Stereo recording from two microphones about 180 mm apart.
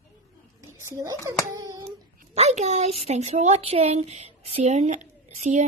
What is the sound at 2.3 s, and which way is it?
Speech, 40° right (ahead or behind).